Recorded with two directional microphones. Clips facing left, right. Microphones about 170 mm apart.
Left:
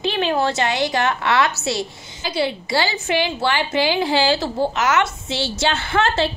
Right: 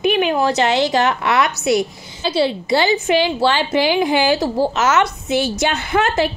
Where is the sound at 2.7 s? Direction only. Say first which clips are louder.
Right 8 dB; 20° right (ahead or behind).